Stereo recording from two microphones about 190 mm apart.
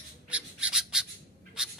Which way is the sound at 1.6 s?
5° right (ahead or behind).